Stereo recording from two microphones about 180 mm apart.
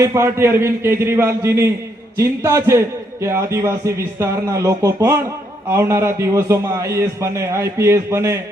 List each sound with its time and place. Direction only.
0.0 s a man's voice: 15° right (ahead or behind)